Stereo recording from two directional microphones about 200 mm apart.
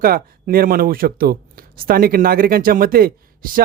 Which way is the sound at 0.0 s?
45° right (ahead or behind).